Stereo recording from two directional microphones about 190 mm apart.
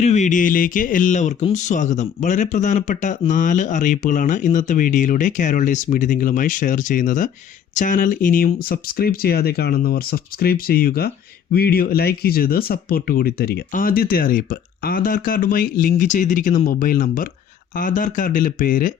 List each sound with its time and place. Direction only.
0.0 s speech: 35° left (ahead or behind)